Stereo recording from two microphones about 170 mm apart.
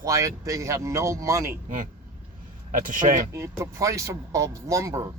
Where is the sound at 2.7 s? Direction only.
50° right (ahead or behind).